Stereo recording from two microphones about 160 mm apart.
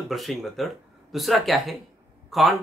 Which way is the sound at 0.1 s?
Centre (ahead or behind).